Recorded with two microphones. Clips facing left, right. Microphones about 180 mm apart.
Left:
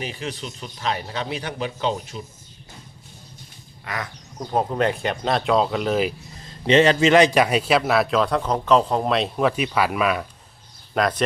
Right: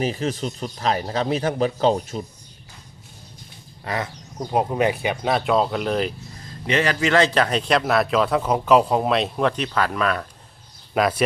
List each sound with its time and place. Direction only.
0.0 s speech: 40° right (ahead or behind)
3.8 s speech: 30° right (ahead or behind)
4.4 s a man's voice: 10° right (ahead or behind)
6.7 s a man's voice: 25° left (ahead or behind); by 10.2 s 10° left (ahead or behind)
10.9 s a man's voice: 5° right (ahead or behind)